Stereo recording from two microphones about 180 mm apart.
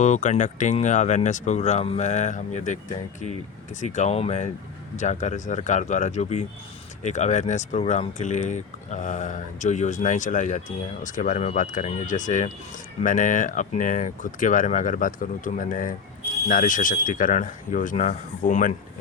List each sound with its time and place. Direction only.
0.0 s speech: 40° left (ahead or behind)